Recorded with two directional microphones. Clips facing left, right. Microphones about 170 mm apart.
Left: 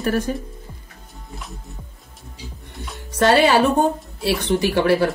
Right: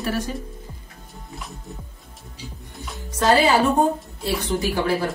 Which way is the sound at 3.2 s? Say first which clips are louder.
Left 2 dB; 70° left (ahead or behind).